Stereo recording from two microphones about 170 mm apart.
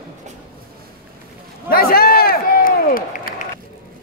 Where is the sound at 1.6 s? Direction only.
60° left (ahead or behind).